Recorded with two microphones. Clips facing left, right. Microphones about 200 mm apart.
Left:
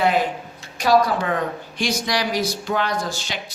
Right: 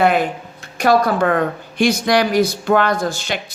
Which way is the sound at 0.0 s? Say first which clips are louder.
Right 4 dB; 55° right (ahead or behind).